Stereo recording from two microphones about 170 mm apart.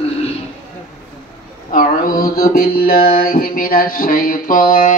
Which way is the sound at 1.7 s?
55° left (ahead or behind).